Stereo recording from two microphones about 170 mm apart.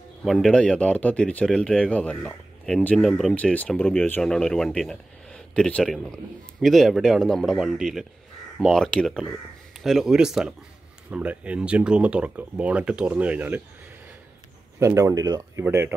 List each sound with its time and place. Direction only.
0.2 s speech: centre (ahead or behind)
14.8 s speech: 15° right (ahead or behind)